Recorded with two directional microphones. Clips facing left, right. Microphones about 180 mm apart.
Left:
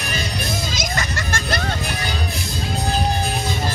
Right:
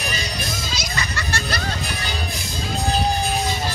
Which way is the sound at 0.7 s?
50° left (ahead or behind).